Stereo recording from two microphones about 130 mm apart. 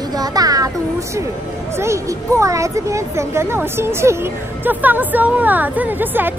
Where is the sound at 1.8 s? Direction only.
20° right (ahead or behind).